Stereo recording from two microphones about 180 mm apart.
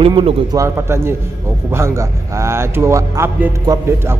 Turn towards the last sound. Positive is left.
turn(degrees=-15)  # may be behind; listen again after turning